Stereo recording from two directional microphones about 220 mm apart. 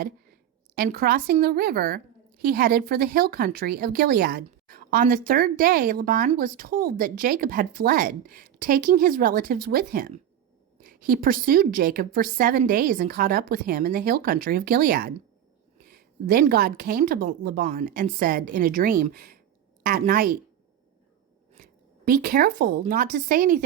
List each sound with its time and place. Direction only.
0.8 s a woman's voice: 45° right (ahead or behind)
21.6 s zipper: 40° right (ahead or behind)
22.9 s speech: 40° right (ahead or behind)